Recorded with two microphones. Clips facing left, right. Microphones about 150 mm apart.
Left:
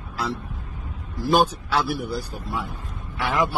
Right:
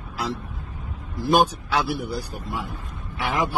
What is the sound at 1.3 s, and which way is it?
Speech, 15° right (ahead or behind).